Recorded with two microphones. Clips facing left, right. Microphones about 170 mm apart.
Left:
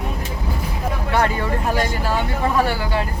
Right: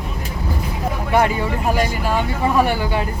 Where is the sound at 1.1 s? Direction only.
15° right (ahead or behind).